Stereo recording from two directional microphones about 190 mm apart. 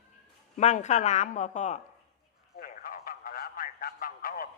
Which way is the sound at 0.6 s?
35° left (ahead or behind).